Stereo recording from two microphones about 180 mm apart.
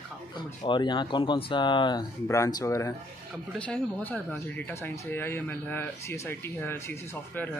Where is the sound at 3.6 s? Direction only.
5° left (ahead or behind).